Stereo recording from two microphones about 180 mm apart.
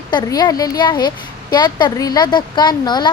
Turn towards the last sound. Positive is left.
turn(degrees=25)  # may be behind; listen again after turning